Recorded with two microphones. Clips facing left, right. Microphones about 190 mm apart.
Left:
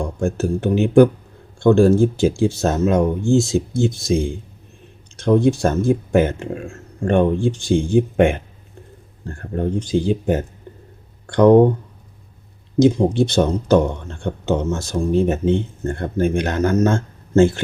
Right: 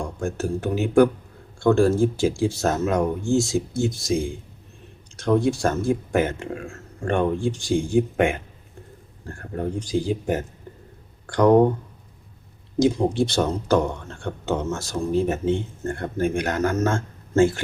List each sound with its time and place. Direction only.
0.2 s speech: 25° left (ahead or behind)
9.6 s speech: 25° left (ahead or behind)
12.8 s speech: 20° left (ahead or behind)